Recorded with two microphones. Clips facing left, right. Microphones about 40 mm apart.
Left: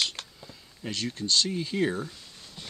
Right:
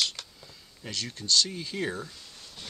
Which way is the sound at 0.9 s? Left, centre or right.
Left.